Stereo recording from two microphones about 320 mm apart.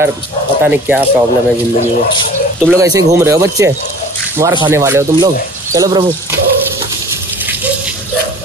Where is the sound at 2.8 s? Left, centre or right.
Centre.